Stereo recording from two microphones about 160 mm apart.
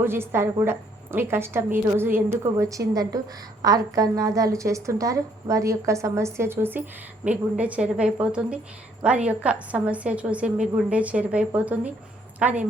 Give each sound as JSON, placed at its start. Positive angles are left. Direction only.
{"t": 0.0, "sound": "a woman's voice", "side_deg": -15}